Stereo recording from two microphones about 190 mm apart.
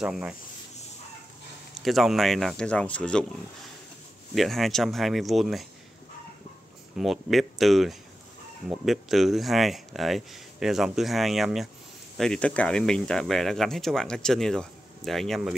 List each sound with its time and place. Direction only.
0.0 s speech: 5° right (ahead or behind)
1.9 s speech: centre (ahead or behind)
4.4 s speech: centre (ahead or behind)
7.0 s speech: centre (ahead or behind)